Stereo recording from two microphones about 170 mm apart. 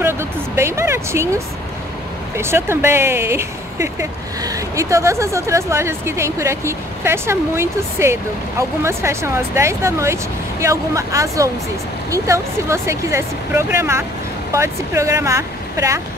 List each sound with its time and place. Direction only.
0.0 s speech: 15° right (ahead or behind)